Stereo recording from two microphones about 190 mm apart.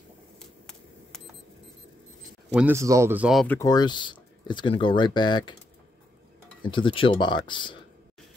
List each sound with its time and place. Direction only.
0.4 s a sound: 5° left (ahead or behind)
2.5 s speech: 10° right (ahead or behind)
3.4 s speech: 15° left (ahead or behind)
6.6 s speech: 25° left (ahead or behind)